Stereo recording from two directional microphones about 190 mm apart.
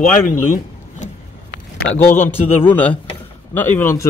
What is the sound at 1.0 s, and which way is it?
Vehicle, 40° left (ahead or behind).